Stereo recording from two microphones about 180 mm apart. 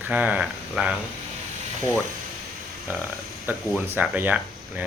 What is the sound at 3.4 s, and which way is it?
Speech, 10° right (ahead or behind).